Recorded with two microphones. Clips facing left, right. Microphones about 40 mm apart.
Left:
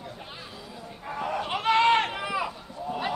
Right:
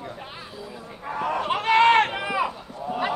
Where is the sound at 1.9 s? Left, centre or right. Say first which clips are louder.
Right 4 dB; right.